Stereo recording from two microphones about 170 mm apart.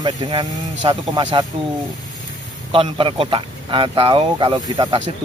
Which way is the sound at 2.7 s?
30° right (ahead or behind).